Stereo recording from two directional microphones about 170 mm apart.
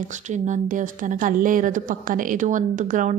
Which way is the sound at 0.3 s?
45° right (ahead or behind).